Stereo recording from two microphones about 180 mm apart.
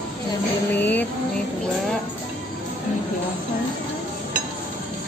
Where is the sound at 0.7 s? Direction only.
10° left (ahead or behind).